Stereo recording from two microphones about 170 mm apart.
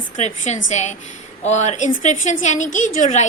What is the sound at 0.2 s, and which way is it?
A woman's voice, 40° left (ahead or behind).